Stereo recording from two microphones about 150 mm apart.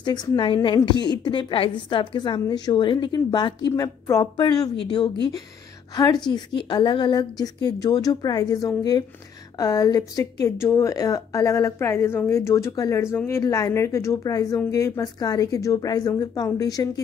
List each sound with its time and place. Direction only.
0.0 s a woman's voice: 30° left (ahead or behind)